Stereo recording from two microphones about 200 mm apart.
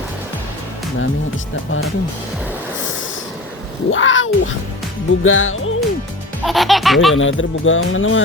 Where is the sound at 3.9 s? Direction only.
75° left (ahead or behind).